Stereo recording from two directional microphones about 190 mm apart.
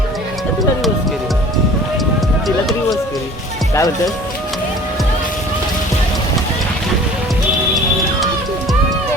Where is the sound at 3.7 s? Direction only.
15° left (ahead or behind).